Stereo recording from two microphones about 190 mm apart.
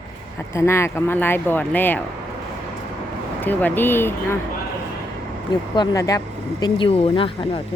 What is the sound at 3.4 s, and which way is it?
Speech, 10° left (ahead or behind).